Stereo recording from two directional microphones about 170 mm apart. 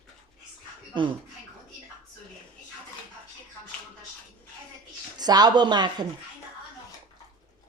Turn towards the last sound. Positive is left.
turn(degrees=-25)  # may be behind; listen again after turning